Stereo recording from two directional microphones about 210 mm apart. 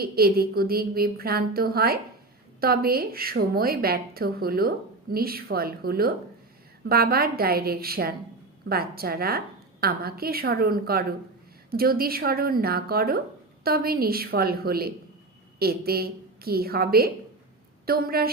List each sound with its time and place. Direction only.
0.0 s a woman's voice: 45° right (ahead or behind)